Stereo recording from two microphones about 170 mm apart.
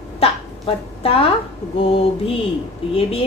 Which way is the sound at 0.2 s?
35° left (ahead or behind).